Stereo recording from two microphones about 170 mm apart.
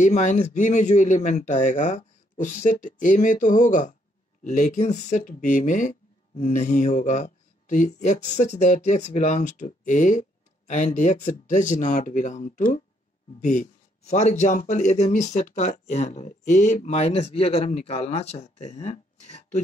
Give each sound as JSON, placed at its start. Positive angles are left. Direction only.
{"t": 0.0, "sound": "speech", "side_deg": 45}
{"t": 14.0, "sound": "speech", "side_deg": 40}